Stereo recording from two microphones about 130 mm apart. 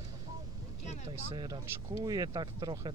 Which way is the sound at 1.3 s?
35° right (ahead or behind).